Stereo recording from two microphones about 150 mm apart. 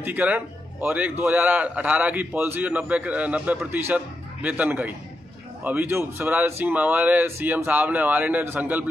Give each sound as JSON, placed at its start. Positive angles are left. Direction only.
{"t": 0.0, "sound": "speech", "side_deg": -10}